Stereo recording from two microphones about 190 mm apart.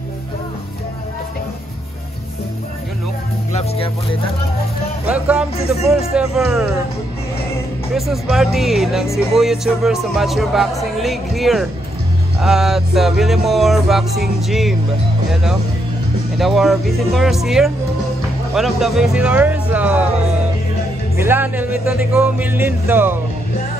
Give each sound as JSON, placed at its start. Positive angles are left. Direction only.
{"t": 3.5, "sound": "speech", "side_deg": 30}
{"t": 5.0, "sound": "speech", "side_deg": -5}
{"t": 7.9, "sound": "speech", "side_deg": 0}
{"t": 16.3, "sound": "speech", "side_deg": 0}
{"t": 21.2, "sound": "speech", "side_deg": -10}